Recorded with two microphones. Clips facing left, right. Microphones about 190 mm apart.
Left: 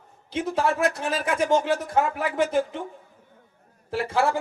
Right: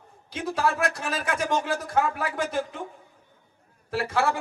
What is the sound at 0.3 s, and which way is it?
Speech, 25° left (ahead or behind).